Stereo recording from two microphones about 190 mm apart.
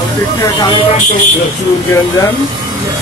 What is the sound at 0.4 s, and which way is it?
Speech, 20° left (ahead or behind).